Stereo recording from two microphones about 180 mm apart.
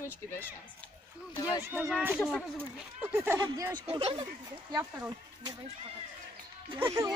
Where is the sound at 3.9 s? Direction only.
35° right (ahead or behind).